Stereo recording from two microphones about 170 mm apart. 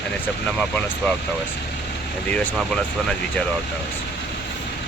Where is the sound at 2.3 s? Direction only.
5° left (ahead or behind).